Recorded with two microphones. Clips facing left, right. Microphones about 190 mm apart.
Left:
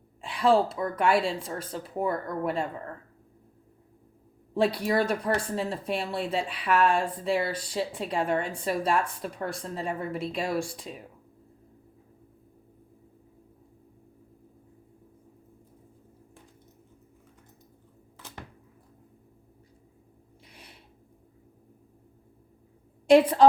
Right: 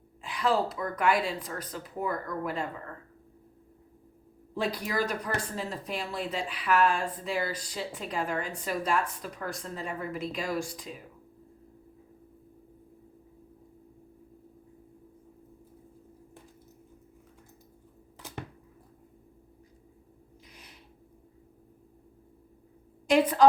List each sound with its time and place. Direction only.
0.2 s speech: 30° left (ahead or behind)
4.5 s speech: 30° left (ahead or behind)
23.0 s a woman's voice: 30° left (ahead or behind)